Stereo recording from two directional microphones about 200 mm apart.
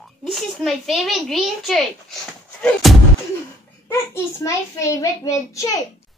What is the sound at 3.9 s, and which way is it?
A child's voice, 15° left (ahead or behind).